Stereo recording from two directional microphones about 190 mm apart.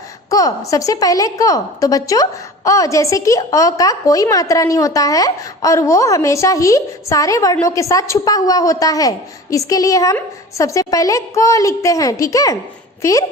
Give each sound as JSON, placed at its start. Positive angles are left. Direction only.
{"t": 0.3, "sound": "a woman's voice", "side_deg": 20}